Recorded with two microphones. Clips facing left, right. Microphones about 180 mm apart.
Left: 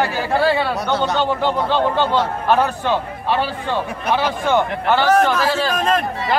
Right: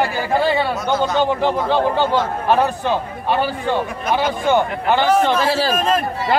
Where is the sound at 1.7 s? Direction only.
10° right (ahead or behind).